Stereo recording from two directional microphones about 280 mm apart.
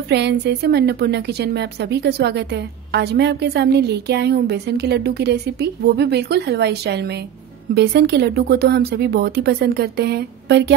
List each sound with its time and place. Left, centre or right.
0.1 s a woman's voice: right